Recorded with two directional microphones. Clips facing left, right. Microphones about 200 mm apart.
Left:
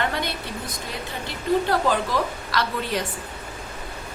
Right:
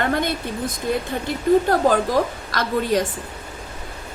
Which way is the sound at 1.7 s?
45° right (ahead or behind).